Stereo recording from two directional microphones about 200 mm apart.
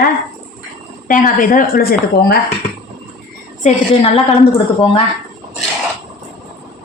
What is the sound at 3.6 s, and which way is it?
Speech, 30° left (ahead or behind).